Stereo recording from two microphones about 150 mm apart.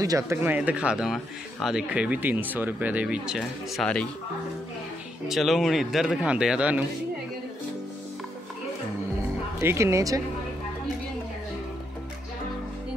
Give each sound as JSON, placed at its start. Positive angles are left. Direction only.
{"t": 0.0, "sound": "speech", "side_deg": -20}
{"t": 5.3, "sound": "a man's voice", "side_deg": 0}
{"t": 9.6, "sound": "speech", "side_deg": -15}